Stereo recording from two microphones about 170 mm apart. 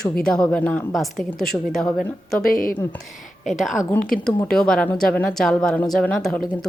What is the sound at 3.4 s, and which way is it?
A woman's voice, centre (ahead or behind).